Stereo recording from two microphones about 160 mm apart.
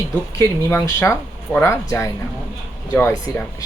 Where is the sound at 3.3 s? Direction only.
20° left (ahead or behind).